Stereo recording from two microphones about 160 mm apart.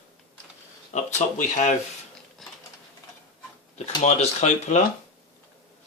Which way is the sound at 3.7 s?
45° left (ahead or behind).